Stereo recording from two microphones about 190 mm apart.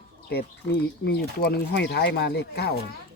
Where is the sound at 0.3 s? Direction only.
60° left (ahead or behind).